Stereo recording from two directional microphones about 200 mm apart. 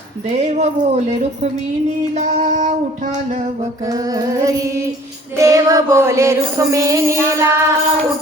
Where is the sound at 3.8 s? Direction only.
20° right (ahead or behind).